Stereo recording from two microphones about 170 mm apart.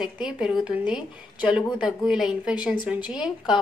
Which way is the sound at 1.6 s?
25° left (ahead or behind).